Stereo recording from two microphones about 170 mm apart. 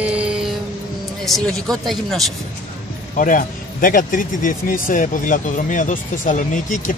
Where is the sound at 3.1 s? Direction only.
50° left (ahead or behind).